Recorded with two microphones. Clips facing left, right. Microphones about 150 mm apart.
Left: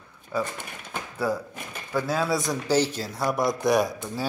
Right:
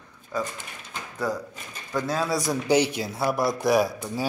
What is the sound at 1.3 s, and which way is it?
Speech, 10° left (ahead or behind).